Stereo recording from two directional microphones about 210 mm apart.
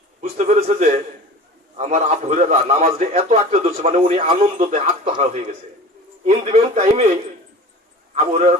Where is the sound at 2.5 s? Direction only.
30° right (ahead or behind).